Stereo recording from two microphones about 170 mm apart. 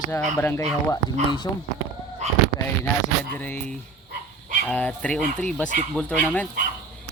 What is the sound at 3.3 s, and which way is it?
Speech, 10° left (ahead or behind).